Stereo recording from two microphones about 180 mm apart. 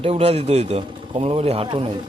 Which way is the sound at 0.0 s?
35° right (ahead or behind).